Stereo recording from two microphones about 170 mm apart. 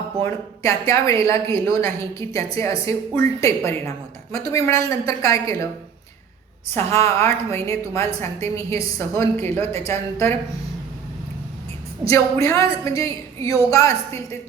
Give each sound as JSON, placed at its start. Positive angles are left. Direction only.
{"t": 0.2, "sound": "a woman's voice", "side_deg": 15}
{"t": 6.7, "sound": "a woman's voice", "side_deg": 15}
{"t": 12.0, "sound": "a woman's voice", "side_deg": 15}